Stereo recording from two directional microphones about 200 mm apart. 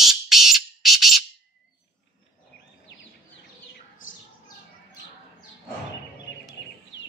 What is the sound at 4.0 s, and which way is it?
Bird, 40° left (ahead or behind).